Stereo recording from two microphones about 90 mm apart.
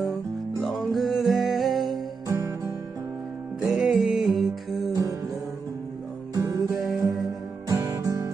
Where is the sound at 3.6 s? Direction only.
5° right (ahead or behind).